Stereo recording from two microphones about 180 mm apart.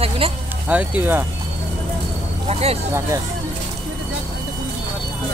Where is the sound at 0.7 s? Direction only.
10° right (ahead or behind).